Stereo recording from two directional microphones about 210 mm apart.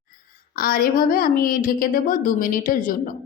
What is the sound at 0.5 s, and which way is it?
Speech, 40° left (ahead or behind).